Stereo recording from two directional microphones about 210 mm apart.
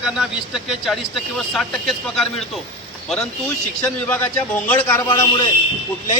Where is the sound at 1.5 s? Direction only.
Centre (ahead or behind).